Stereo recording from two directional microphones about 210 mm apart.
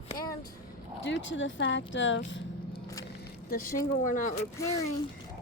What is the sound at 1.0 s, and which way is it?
Speech, 60° left (ahead or behind).